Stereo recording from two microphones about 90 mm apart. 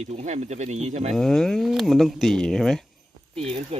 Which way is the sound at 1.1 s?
5° left (ahead or behind).